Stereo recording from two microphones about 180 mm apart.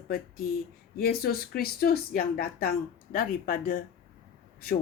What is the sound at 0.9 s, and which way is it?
A woman's voice, 60° left (ahead or behind).